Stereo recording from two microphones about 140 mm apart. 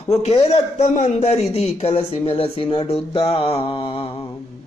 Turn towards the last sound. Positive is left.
turn(degrees=40)  # may be behind; listen again after turning